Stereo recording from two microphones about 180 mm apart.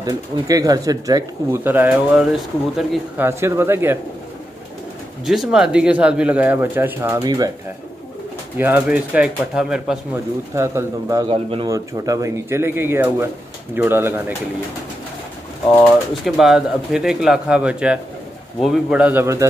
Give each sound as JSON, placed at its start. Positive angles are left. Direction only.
{"t": 0.0, "sound": "speech", "side_deg": -20}
{"t": 5.2, "sound": "speech", "side_deg": 0}
{"t": 8.5, "sound": "speech", "side_deg": -10}
{"t": 10.5, "sound": "speech", "side_deg": -15}
{"t": 11.2, "sound": "speech", "side_deg": -30}
{"t": 11.7, "sound": "speech", "side_deg": -20}
{"t": 16.3, "sound": "speech", "side_deg": 0}